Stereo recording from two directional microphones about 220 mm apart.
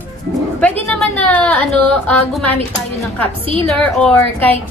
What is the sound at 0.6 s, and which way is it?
A woman's voice, 5° left (ahead or behind).